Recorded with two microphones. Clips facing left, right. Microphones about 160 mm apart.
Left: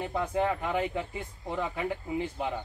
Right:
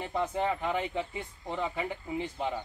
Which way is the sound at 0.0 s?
Centre (ahead or behind).